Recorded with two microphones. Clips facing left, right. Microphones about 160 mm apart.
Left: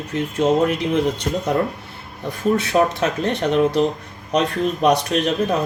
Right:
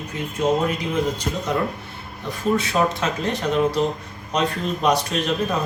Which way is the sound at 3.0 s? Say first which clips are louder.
Left 3 dB; 65° left (ahead or behind).